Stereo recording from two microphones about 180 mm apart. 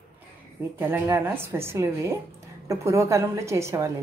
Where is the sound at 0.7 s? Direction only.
10° right (ahead or behind).